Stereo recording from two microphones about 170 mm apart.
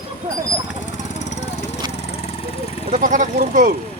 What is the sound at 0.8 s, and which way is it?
Jackhammer, 45° left (ahead or behind).